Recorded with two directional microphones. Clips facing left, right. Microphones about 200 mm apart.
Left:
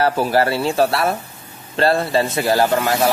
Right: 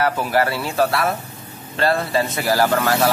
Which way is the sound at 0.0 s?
30° left (ahead or behind).